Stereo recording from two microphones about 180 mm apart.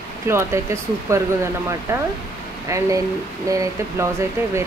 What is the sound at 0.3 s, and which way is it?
Speech, 15° right (ahead or behind).